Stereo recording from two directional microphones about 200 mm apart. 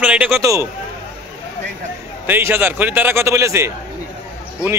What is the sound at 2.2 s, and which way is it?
A man's voice, 10° right (ahead or behind).